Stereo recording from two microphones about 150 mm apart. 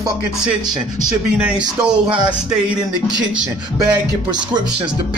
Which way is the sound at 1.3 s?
5° right (ahead or behind).